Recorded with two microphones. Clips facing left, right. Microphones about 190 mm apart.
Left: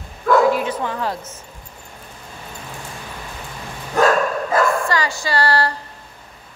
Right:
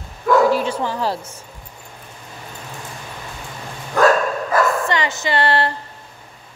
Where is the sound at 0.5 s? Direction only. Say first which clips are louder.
Right 1 dB; 30° right (ahead or behind).